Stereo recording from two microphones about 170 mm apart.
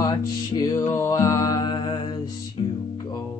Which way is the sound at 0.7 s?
15° left (ahead or behind).